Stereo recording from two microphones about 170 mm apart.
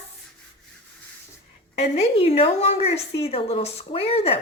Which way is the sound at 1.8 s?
35° left (ahead or behind).